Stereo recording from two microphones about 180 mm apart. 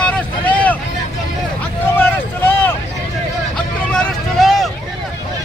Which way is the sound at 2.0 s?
10° left (ahead or behind).